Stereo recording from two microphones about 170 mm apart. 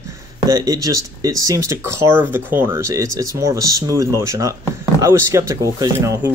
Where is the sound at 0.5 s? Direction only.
20° right (ahead or behind).